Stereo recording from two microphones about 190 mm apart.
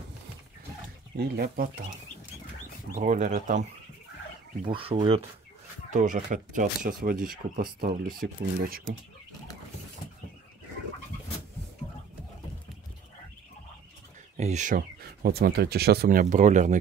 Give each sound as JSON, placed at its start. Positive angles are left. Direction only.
{"t": 1.1, "sound": "speech", "side_deg": -60}
{"t": 3.0, "sound": "speech", "side_deg": -40}
{"t": 4.6, "sound": "speech", "side_deg": -25}
{"t": 5.9, "sound": "speech", "side_deg": -40}
{"t": 14.3, "sound": "speech", "side_deg": -40}